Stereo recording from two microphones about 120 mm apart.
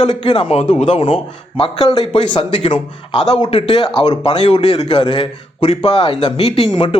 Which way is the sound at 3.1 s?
50° left (ahead or behind).